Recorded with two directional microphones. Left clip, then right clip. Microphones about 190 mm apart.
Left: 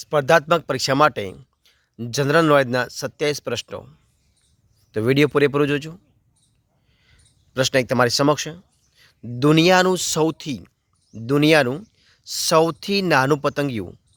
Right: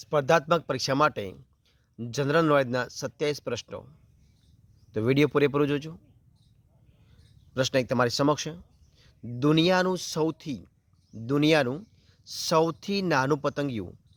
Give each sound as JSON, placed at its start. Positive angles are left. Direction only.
{"t": 0.0, "sound": "speech", "side_deg": 15}
{"t": 7.0, "sound": "a sound", "side_deg": 15}
{"t": 9.2, "sound": "speech", "side_deg": 25}